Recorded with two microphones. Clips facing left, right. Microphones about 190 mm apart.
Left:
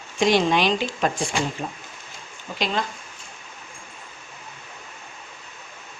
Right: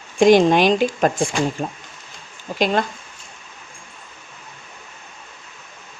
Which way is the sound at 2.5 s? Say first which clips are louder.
Right 7 dB; 50° right (ahead or behind).